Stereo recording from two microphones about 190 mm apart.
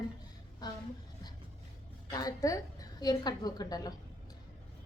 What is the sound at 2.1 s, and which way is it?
A woman's voice, 20° left (ahead or behind).